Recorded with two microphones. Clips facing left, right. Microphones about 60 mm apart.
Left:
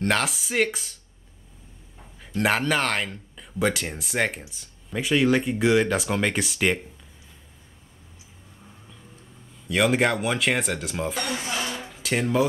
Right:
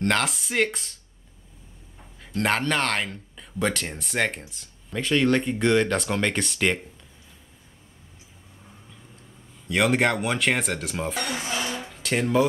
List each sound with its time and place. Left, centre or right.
0.0 s speech: centre
2.2 s speech: centre
9.7 s speech: centre